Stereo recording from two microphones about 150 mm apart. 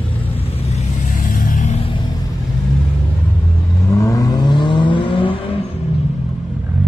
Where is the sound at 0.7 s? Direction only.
55° left (ahead or behind).